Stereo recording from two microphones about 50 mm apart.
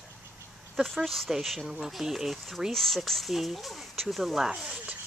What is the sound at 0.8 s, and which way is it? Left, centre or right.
Speech, centre.